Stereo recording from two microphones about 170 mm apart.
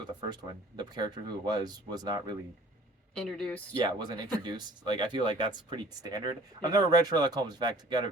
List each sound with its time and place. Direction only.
0.0 s speech: 25° right (ahead or behind)
3.2 s speech: 5° left (ahead or behind)
3.8 s speech: 25° right (ahead or behind)